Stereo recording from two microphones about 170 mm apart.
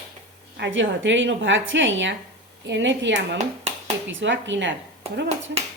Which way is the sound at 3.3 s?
40° right (ahead or behind).